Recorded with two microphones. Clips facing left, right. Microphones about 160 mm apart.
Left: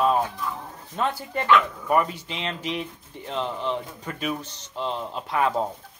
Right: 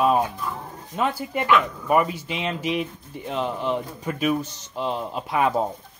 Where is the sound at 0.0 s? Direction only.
15° right (ahead or behind).